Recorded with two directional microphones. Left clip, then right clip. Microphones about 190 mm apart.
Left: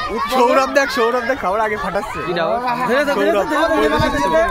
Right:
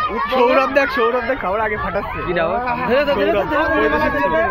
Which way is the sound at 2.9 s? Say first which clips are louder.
Even; 50° left (ahead or behind).